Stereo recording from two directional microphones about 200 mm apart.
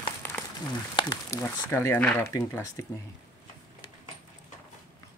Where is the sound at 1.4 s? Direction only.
10° left (ahead or behind).